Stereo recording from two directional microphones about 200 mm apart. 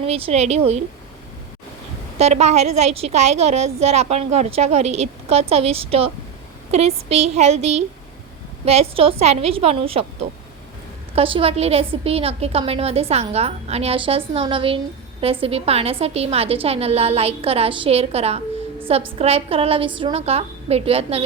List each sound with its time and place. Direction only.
0.0 s a woman's voice: 30° right (ahead or behind)
2.1 s a woman's voice: 35° right (ahead or behind)
11.1 s a woman's voice: 25° right (ahead or behind)